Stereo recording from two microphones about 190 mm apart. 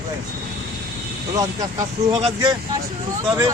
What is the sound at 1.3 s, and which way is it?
Speech, 20° right (ahead or behind).